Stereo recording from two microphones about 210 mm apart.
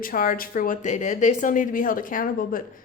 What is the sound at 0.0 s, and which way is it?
A woman's voice, 40° left (ahead or behind).